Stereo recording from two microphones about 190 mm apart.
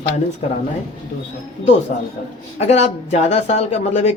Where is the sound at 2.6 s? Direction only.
35° left (ahead or behind).